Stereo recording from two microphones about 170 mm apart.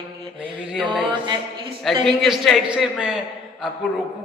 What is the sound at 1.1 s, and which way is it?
A capella, 30° right (ahead or behind).